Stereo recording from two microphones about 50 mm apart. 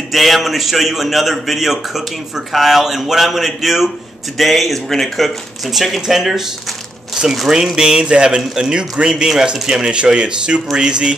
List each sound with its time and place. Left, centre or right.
0.1 s a man's voice: centre